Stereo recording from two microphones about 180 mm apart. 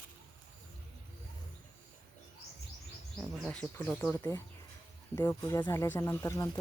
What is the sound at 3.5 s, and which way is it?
Speech, 5° left (ahead or behind).